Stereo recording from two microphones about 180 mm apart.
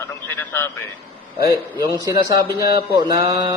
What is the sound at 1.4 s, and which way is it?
A man's voice, 20° right (ahead or behind).